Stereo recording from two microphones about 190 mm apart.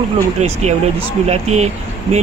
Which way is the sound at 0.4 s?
35° right (ahead or behind).